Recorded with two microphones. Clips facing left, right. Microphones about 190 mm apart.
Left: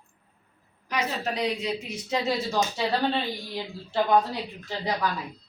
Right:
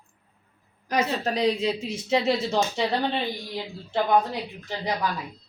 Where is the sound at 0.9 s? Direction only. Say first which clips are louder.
Right 4 dB; 35° right (ahead or behind).